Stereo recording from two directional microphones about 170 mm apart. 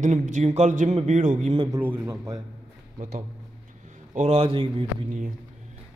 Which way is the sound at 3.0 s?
45° right (ahead or behind).